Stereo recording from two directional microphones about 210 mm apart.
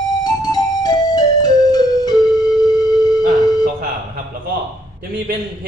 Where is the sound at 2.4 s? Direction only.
20° left (ahead or behind).